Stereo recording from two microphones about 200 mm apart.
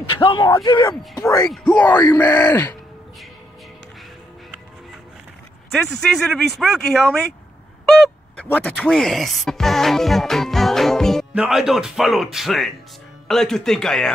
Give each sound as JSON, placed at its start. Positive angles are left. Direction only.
{"t": 0.1, "sound": "speech", "side_deg": 25}
{"t": 1.5, "sound": "speech", "side_deg": 5}
{"t": 5.7, "sound": "speech", "side_deg": 0}